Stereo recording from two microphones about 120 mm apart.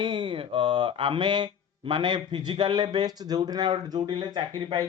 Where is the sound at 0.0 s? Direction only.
40° right (ahead or behind).